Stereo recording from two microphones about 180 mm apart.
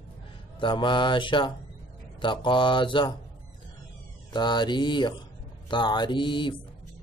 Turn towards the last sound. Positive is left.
turn(degrees=25)  # may be behind; listen again after turning